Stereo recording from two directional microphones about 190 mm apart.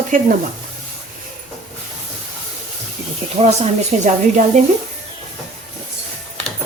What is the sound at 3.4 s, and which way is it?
Speech, 35° right (ahead or behind).